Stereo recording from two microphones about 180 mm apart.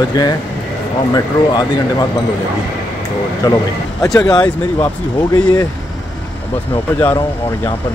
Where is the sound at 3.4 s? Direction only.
20° left (ahead or behind).